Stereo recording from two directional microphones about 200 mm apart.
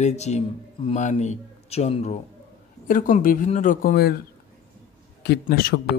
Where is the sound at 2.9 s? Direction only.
40° left (ahead or behind).